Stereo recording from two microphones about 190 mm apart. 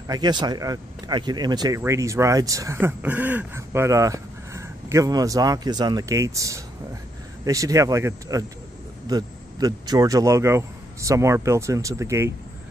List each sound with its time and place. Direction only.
0.1 s speech: 20° right (ahead or behind)